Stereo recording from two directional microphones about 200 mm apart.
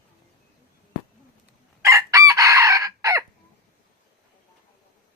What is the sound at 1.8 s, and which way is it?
Chicken, 15° right (ahead or behind).